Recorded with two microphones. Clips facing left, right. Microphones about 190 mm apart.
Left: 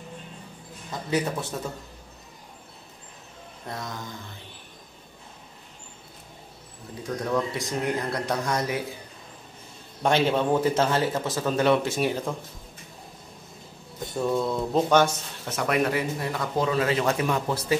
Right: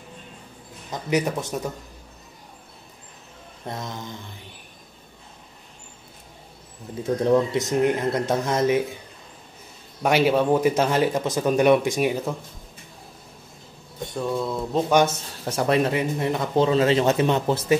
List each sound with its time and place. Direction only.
1.1 s speech: 15° right (ahead or behind)
3.6 s speech: 20° right (ahead or behind)
7.0 s speech: 25° right (ahead or behind)
10.0 s speech: 10° right (ahead or behind)
14.1 s a sound: centre (ahead or behind)
15.4 s speech: 30° right (ahead or behind)